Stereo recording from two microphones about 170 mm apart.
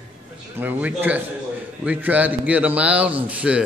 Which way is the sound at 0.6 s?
10° right (ahead or behind).